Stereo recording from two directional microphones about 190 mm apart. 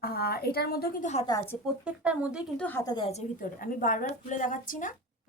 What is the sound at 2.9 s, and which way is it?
Speech, 30° left (ahead or behind).